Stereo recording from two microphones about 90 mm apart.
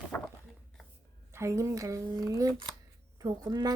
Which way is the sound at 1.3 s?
30° right (ahead or behind).